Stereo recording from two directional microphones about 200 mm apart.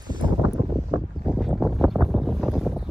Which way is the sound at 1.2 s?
Centre (ahead or behind).